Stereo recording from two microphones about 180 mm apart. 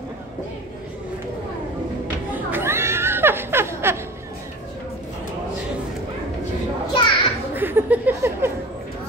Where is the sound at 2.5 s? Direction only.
15° right (ahead or behind).